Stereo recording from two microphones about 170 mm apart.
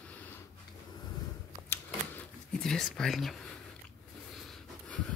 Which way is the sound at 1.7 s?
5° left (ahead or behind).